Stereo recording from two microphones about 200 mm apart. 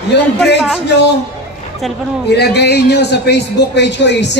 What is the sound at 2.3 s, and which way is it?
A man's voice, 55° left (ahead or behind).